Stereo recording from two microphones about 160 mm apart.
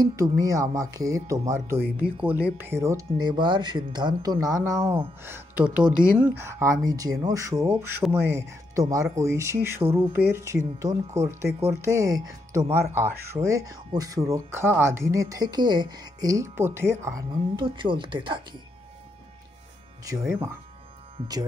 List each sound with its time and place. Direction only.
0.0 s speech: 20° right (ahead or behind)
1.8 s speech: 70° right (ahead or behind)
2.2 s speech: 10° right (ahead or behind)
3.1 s speech: 30° right (ahead or behind)
9.8 s speech: 35° right (ahead or behind)
10.1 s speech: 15° right (ahead or behind)
20.1 s speech: 20° right (ahead or behind)